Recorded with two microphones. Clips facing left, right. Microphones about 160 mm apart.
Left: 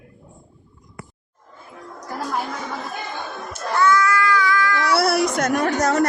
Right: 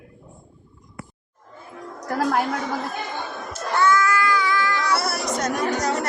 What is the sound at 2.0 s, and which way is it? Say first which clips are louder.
Speech: right 5 dB; 70° right (ahead or behind).